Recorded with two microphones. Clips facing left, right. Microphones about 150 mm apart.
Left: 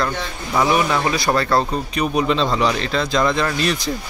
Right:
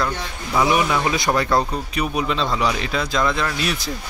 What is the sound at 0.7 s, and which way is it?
Speech, 15° right (ahead or behind).